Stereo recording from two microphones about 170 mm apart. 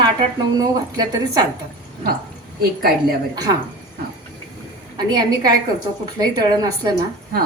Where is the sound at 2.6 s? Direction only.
65° right (ahead or behind).